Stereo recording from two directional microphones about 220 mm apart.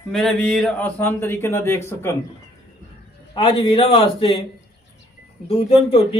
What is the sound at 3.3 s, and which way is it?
A man's voice, 20° left (ahead or behind).